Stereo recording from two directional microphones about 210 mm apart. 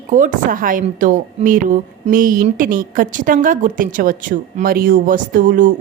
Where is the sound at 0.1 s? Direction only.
35° right (ahead or behind).